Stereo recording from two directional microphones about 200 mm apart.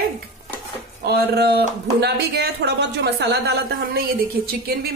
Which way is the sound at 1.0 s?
55° right (ahead or behind).